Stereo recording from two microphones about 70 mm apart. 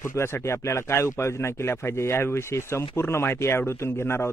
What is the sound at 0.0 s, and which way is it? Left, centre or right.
Speech, left.